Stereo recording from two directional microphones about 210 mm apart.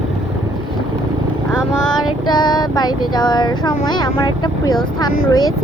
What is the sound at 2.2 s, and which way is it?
Female singing, 20° left (ahead or behind).